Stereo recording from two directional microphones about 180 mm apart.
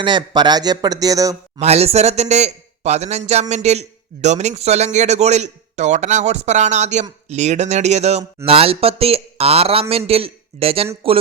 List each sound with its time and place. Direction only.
0.0 s speech: 25° right (ahead or behind)
1.5 s a man's voice: 35° right (ahead or behind)